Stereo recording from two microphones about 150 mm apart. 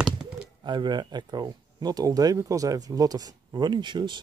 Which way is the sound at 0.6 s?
30° right (ahead or behind).